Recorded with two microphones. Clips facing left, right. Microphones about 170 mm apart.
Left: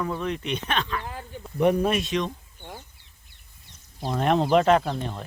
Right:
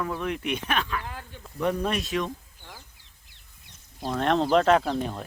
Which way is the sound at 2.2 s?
25° left (ahead or behind).